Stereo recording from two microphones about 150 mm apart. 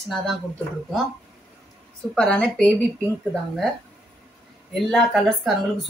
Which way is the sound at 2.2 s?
5° left (ahead or behind).